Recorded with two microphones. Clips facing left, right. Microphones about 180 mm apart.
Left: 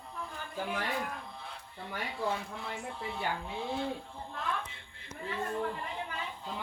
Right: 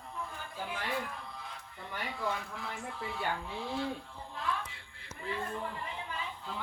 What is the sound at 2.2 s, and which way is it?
Speech, 30° left (ahead or behind).